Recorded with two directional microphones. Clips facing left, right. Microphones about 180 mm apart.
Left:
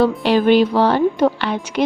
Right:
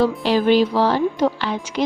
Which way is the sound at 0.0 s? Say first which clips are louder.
Left 3 dB; 60° left (ahead or behind).